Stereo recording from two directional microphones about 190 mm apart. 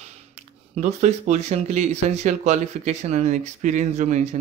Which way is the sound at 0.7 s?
40° right (ahead or behind).